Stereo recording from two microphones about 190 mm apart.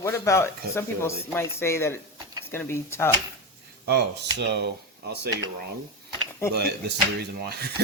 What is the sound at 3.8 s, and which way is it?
Speech, 60° right (ahead or behind).